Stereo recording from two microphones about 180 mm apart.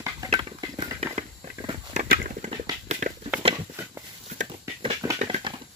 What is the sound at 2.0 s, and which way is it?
Horse, 55° right (ahead or behind).